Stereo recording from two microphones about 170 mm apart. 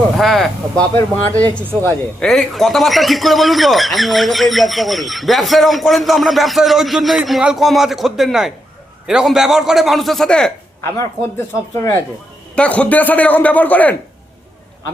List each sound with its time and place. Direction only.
0.2 s a man's voice: centre (ahead or behind)
10.9 s a man's voice: 15° left (ahead or behind)